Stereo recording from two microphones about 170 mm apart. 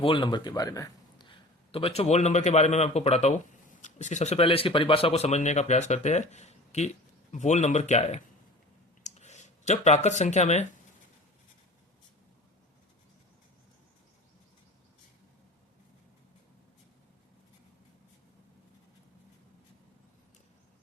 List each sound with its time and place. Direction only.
0.0 s a man's voice: 30° left (ahead or behind)